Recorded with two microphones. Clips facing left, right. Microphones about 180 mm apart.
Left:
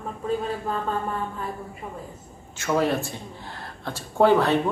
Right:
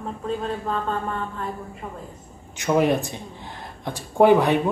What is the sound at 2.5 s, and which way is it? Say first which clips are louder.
Speech: right 3 dB; 15° right (ahead or behind).